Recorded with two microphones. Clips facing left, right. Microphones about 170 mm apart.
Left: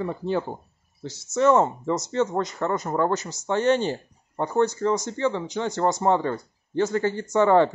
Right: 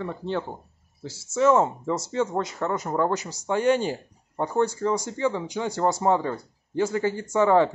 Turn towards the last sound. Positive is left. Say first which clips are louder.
# left 1 dB
turn(degrees=-5)  # may be behind; listen again after turning